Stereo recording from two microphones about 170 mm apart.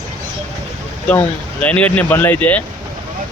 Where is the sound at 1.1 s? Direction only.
10° left (ahead or behind).